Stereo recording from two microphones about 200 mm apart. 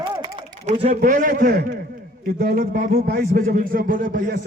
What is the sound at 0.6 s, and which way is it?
A man's voice, 30° right (ahead or behind).